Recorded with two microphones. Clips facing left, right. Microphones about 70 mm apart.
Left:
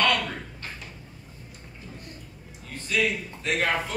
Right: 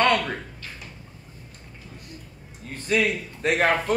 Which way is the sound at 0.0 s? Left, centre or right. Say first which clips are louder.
Right 4 dB; right.